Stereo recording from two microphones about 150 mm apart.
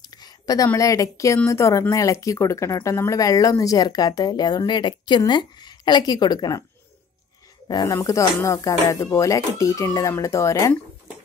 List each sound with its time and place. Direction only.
0.0 s a sound: 25° left (ahead or behind)
0.7 s speech: 20° left (ahead or behind)
7.6 s speech: 25° left (ahead or behind)